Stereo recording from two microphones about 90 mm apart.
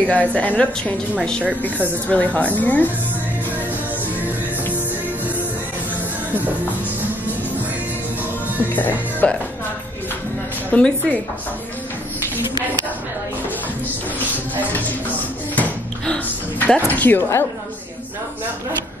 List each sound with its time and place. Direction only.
0.0 s a woman's voice: 15° left (ahead or behind)
2.0 s a woman's voice: 15° left (ahead or behind)
8.7 s speech: 20° left (ahead or behind)
10.7 s a woman's voice: 15° left (ahead or behind)
15.5 s a sound: 15° left (ahead or behind)
16.9 s a woman's voice: 20° left (ahead or behind)